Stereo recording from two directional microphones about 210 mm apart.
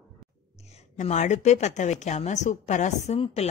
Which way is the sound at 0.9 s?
35° left (ahead or behind).